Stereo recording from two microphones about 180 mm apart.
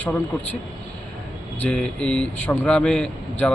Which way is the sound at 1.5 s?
5° left (ahead or behind).